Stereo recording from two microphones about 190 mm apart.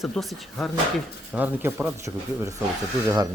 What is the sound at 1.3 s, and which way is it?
Speech, 10° right (ahead or behind).